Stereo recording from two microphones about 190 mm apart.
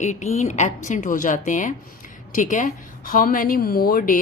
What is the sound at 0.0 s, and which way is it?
A woman's voice, 40° left (ahead or behind).